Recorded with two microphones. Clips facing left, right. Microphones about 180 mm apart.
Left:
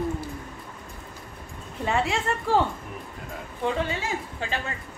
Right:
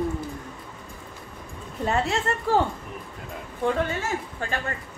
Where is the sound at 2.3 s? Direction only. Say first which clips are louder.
Even; 40° right (ahead or behind).